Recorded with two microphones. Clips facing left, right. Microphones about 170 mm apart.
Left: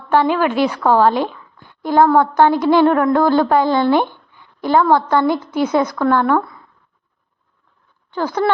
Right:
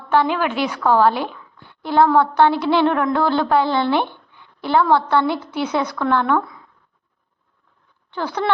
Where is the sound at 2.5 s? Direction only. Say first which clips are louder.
Left 4 dB; 45° left (ahead or behind).